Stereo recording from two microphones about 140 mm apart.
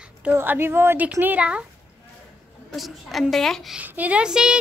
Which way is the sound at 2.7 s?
Centre (ahead or behind).